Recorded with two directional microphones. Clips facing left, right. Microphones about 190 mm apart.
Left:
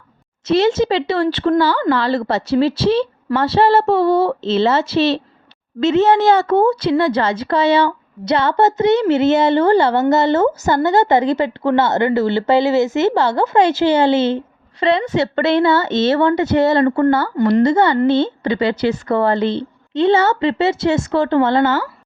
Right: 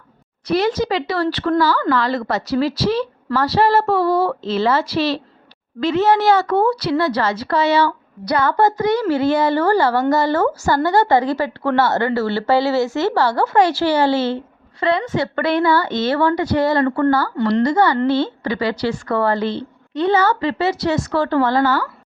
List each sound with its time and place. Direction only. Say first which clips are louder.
0.4 s a woman's voice: left 4 dB; 25° left (ahead or behind)